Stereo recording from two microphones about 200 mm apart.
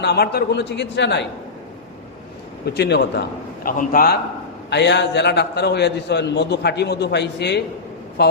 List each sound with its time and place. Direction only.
0.0 s a man's voice: 55° left (ahead or behind)
2.6 s a man's voice: 55° left (ahead or behind)
4.7 s a man's voice: 60° left (ahead or behind)